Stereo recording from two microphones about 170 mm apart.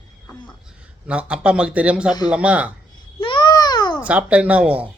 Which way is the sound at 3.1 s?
30° left (ahead or behind).